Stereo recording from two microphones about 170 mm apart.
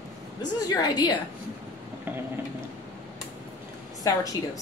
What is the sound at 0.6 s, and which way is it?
Speech, 25° left (ahead or behind).